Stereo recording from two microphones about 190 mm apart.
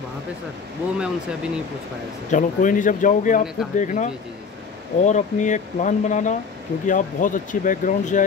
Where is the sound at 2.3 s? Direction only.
45° left (ahead or behind).